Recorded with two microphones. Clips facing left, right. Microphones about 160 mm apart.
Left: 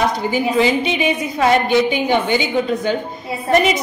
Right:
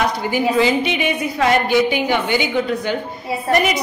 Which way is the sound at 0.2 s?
20° left (ahead or behind).